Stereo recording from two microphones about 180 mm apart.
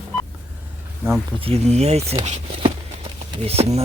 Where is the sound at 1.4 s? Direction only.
35° right (ahead or behind).